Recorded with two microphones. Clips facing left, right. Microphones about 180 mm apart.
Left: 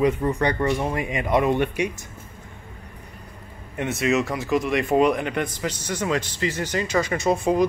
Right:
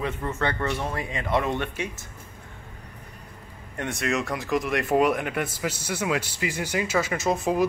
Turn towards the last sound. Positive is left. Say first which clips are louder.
# left 3 dB
turn(degrees=0)  # may be behind; listen again after turning